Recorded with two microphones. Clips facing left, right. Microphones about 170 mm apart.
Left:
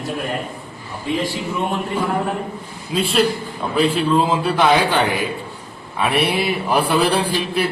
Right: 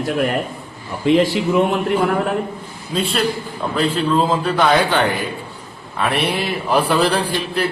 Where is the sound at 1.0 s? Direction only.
90° right.